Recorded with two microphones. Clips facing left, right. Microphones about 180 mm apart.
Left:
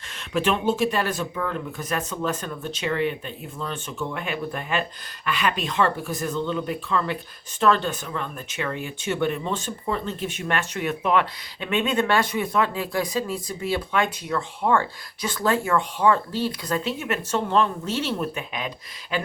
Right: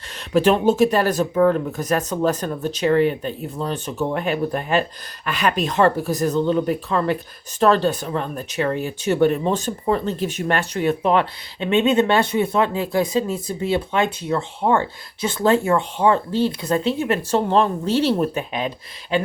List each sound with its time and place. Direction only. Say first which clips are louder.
0.3 s speech: right 7 dB; 40° right (ahead or behind)